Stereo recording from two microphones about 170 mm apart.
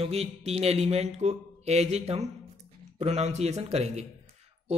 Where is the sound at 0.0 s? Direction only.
35° right (ahead or behind).